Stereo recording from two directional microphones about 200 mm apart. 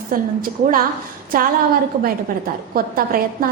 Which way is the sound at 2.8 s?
45° right (ahead or behind).